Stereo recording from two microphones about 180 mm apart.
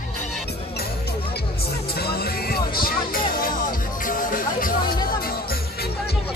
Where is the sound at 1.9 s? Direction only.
60° left (ahead or behind).